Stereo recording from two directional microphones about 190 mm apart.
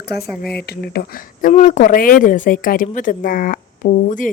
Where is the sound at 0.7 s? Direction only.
55° left (ahead or behind).